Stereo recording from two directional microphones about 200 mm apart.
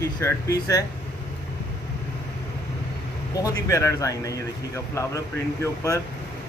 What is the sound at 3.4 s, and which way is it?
Speech, 15° left (ahead or behind).